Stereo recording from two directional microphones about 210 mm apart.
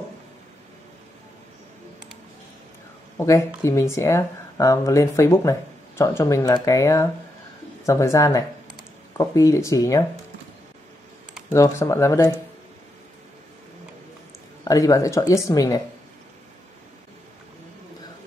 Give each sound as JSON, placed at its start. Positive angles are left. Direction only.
{"t": 3.2, "sound": "speech", "side_deg": 15}
{"t": 11.5, "sound": "speech", "side_deg": 15}
{"t": 14.6, "sound": "speech", "side_deg": 15}